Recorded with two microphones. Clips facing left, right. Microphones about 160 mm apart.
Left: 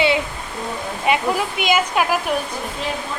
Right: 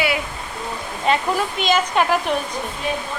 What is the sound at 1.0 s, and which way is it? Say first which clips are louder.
Speech: even; 10° left (ahead or behind).